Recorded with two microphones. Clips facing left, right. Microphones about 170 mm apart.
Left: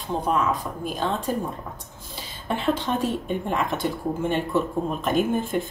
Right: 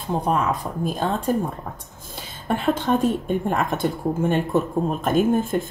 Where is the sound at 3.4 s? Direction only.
45° right (ahead or behind).